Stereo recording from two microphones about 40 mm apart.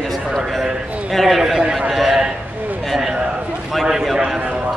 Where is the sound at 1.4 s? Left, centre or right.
Centre.